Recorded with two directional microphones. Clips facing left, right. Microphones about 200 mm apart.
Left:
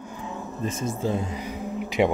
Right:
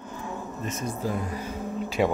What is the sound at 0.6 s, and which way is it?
Speech, 30° left (ahead or behind).